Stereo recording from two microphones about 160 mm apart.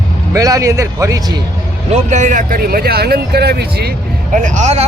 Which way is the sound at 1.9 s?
50° right (ahead or behind).